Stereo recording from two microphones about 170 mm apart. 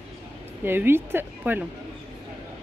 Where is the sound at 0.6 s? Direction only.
15° right (ahead or behind).